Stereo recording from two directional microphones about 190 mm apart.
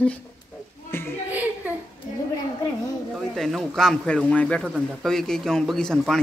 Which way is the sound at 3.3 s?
Centre (ahead or behind).